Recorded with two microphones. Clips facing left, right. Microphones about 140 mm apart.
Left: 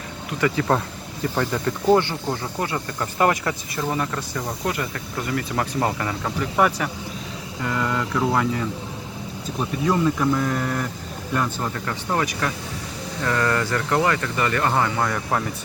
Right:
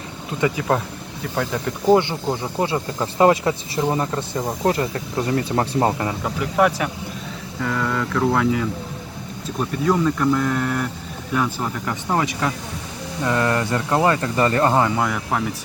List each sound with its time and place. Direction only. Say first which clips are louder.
0.3 s speech: right 1 dB; 20° right (ahead or behind)
1.2 s speech: left 1 dB; centre (ahead or behind)
2.0 s speech: right 2 dB; 20° right (ahead or behind)
6.2 s speech: right 2 dB; 5° right (ahead or behind)
9.8 s speech: right 2 dB; centre (ahead or behind)
11.9 s speech: right 3 dB; 20° right (ahead or behind)
14.7 s speech: right 3 dB; 15° right (ahead or behind)